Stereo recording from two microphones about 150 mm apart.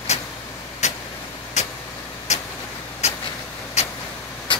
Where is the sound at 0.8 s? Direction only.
50° left (ahead or behind).